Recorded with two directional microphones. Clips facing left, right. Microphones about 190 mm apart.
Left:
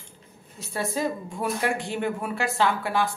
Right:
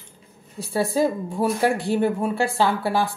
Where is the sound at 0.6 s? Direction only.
35° right (ahead or behind).